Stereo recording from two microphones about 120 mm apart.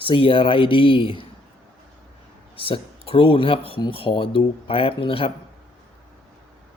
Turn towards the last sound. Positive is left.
turn(degrees=50)  # may be behind; listen again after turning